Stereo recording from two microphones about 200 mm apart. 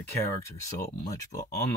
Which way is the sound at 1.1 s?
15° left (ahead or behind).